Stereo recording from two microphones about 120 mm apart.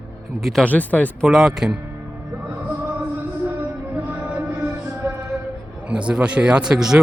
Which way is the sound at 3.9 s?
10° right (ahead or behind).